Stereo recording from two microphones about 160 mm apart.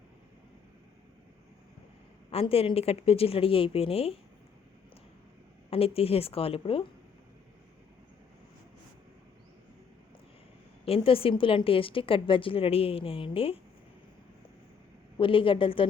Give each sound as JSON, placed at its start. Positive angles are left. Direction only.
{"t": 2.3, "sound": "a woman's voice", "side_deg": 35}
{"t": 5.7, "sound": "a woman's voice", "side_deg": 35}
{"t": 10.8, "sound": "a woman's voice", "side_deg": 35}
{"t": 15.2, "sound": "a woman's voice", "side_deg": 35}